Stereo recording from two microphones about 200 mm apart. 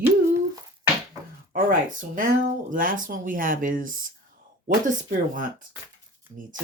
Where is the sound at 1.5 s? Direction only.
45° right (ahead or behind).